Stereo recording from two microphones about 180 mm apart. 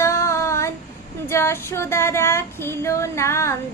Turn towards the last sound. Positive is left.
turn(degrees=15)  # may be behind; listen again after turning